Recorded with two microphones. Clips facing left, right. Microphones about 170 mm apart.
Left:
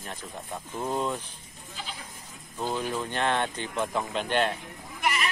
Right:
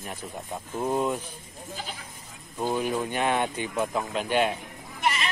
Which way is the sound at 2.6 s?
15° right (ahead or behind).